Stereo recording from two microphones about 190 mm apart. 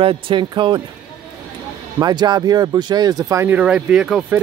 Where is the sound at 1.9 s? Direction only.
20° right (ahead or behind).